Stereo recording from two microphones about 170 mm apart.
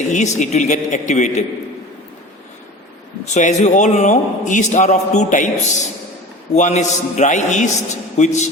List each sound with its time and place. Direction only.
0.1 s a man's voice: 45° left (ahead or behind)
3.3 s a man's voice: 45° left (ahead or behind)